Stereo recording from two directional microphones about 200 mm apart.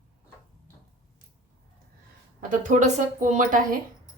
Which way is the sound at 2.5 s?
40° right (ahead or behind).